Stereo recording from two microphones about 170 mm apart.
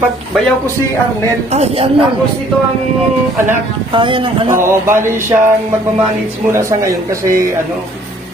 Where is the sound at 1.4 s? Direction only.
40° right (ahead or behind).